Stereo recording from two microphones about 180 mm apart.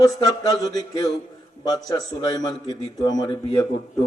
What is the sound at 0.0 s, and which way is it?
Speech, 20° left (ahead or behind).